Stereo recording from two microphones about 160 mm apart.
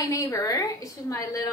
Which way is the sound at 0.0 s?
20° left (ahead or behind).